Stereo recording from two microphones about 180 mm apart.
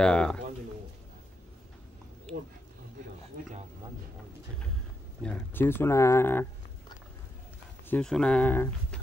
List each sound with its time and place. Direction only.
0.0 s speech: 5° left (ahead or behind)
5.2 s speech: 10° left (ahead or behind)
7.9 s speech: 5° left (ahead or behind)